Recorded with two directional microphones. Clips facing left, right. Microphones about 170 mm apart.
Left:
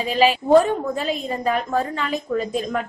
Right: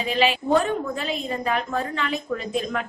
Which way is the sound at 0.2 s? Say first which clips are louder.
Left 6 dB; 40° left (ahead or behind).